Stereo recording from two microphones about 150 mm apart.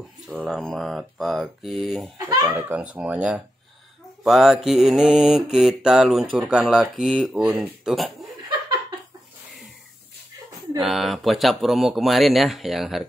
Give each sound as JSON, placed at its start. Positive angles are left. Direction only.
{"t": 0.3, "sound": "speech", "side_deg": -10}
{"t": 0.6, "sound": "mantra", "side_deg": 0}
{"t": 2.1, "sound": "speech", "side_deg": -25}
{"t": 2.4, "sound": "speech", "side_deg": -10}
{"t": 4.2, "sound": "mantra", "side_deg": 0}
{"t": 10.8, "sound": "mantra", "side_deg": 0}